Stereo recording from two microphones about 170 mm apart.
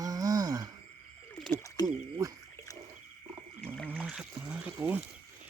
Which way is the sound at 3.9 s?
Centre (ahead or behind).